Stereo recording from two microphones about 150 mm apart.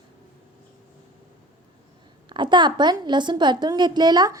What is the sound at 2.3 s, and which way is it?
A woman's voice, 30° right (ahead or behind).